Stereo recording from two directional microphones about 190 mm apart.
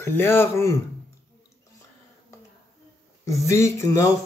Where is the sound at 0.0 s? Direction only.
10° left (ahead or behind).